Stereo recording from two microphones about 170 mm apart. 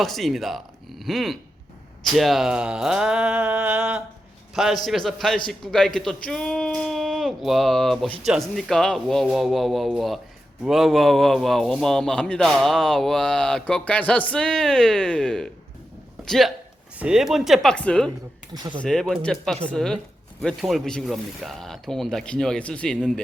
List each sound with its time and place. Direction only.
0.0 s a man's voice: centre (ahead or behind)
18.5 s speech: 25° right (ahead or behind)
18.8 s a man's voice: 5° left (ahead or behind)